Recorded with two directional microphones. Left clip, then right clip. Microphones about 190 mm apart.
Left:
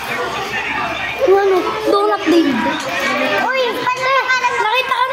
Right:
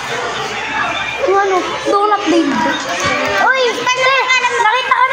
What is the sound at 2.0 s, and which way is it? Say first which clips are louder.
Speech: right 2 dB; 10° left (ahead or behind).